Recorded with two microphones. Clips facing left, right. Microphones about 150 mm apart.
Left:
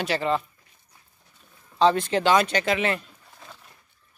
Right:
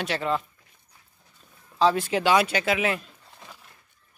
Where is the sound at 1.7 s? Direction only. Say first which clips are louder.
Left 2 dB; 5° right (ahead or behind).